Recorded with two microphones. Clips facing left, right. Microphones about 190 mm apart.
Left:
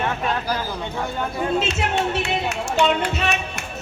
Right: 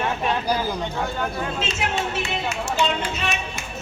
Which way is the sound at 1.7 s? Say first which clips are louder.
Left 3 dB; 70° left (ahead or behind).